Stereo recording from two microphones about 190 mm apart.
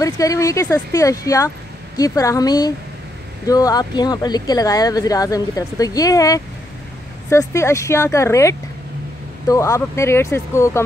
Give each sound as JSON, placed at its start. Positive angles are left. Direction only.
{"t": 0.0, "sound": "speech", "side_deg": 15}